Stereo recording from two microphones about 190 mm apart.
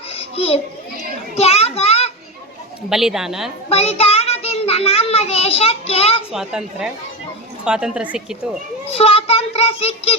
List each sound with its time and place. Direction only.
0.1 s a sound: 30° left (ahead or behind)
1.4 s children playing: 35° left (ahead or behind)
2.9 s speech: centre (ahead or behind)
3.7 s a child's voice: 35° left (ahead or behind)
6.3 s speech: 5° right (ahead or behind)
8.9 s child singing: 30° left (ahead or behind)